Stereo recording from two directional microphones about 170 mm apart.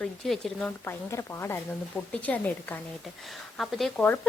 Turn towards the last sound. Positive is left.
turn(degrees=5)  # may be behind; listen again after turning